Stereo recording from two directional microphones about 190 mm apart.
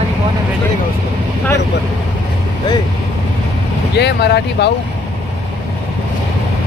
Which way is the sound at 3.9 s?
60° left (ahead or behind).